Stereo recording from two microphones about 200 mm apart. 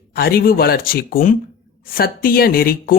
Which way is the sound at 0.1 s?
50° left (ahead or behind).